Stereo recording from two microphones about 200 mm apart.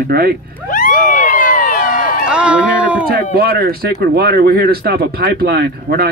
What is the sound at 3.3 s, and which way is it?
Speech, 50° right (ahead or behind).